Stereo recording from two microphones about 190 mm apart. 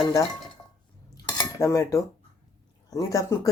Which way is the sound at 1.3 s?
15° left (ahead or behind).